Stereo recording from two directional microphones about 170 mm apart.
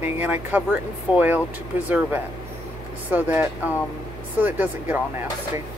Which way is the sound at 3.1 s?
10° right (ahead or behind).